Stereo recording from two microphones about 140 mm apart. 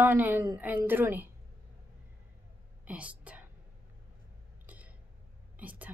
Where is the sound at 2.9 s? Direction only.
10° right (ahead or behind).